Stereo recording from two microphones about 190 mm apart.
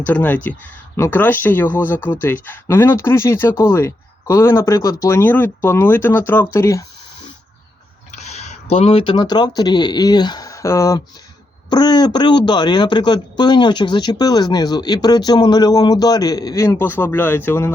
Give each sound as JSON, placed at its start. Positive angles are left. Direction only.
{"t": 0.0, "sound": "speech", "side_deg": 10}
{"t": 8.1, "sound": "speech", "side_deg": 35}